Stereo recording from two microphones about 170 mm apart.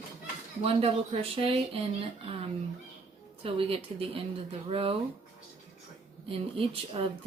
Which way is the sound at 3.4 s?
35° right (ahead or behind).